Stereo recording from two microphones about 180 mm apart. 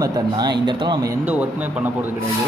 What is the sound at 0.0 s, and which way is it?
Speech, 20° right (ahead or behind).